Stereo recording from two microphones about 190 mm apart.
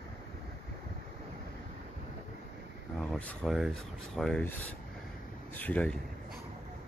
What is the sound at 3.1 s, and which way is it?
Speech, 5° left (ahead or behind).